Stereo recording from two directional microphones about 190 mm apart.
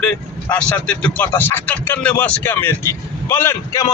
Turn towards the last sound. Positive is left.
turn(degrees=15)  # may be behind; listen again after turning